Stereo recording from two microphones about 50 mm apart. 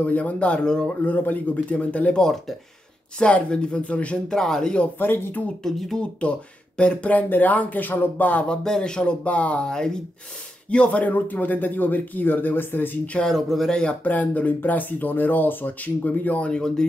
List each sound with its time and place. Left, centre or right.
0.0 s speech: left
2.1 s speech: centre
3.2 s speech: left
4.3 s speech: centre
4.9 s speech: left
5.6 s speech: centre
6.8 s speech: left
8.5 s speech: centre
9.7 s speech: centre
10.7 s speech: left
13.0 s speech: left
13.3 s speech: centre
14.0 s speech: left